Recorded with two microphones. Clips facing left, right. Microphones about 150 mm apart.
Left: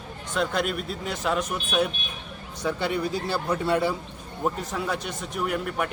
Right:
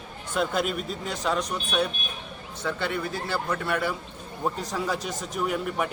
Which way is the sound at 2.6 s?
15° left (ahead or behind).